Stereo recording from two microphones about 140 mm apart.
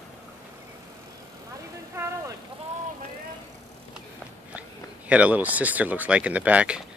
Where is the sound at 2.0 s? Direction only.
15° right (ahead or behind).